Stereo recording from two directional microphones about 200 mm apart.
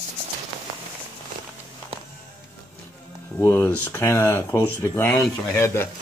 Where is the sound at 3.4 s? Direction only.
10° left (ahead or behind).